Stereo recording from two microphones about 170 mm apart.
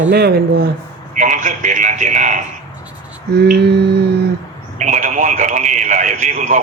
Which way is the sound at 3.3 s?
70° right (ahead or behind).